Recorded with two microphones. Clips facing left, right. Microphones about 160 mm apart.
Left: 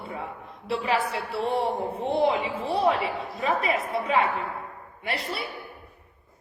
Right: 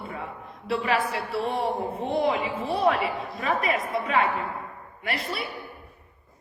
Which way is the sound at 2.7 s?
30° left (ahead or behind).